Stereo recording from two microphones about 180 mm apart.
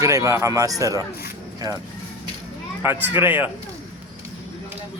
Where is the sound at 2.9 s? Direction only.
10° right (ahead or behind).